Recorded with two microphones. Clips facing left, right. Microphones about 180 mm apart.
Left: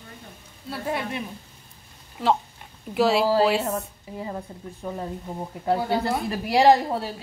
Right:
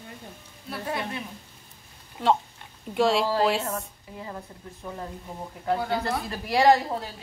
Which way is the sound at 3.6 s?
25° left (ahead or behind).